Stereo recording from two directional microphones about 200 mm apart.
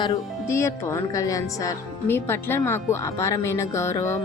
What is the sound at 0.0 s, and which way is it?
Speech, 15° left (ahead or behind).